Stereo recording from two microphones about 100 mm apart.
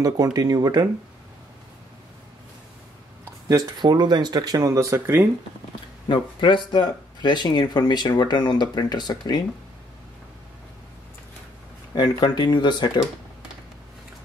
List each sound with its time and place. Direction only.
0.0 s speech: 40° right (ahead or behind)
3.4 s speech: 40° right (ahead or behind); by 5.3 s 20° right (ahead or behind)
6.0 s speech: 55° left (ahead or behind)
11.9 s speech: 50° left (ahead or behind)